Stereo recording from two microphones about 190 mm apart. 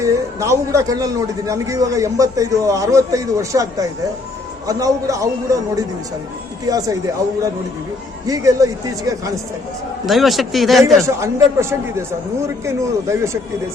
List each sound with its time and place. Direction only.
0.0 s a man's voice: 15° right (ahead or behind)
8.3 s a man's voice: 15° right (ahead or behind)
10.1 s speech: centre (ahead or behind)
11.0 s a man's voice: 15° right (ahead or behind)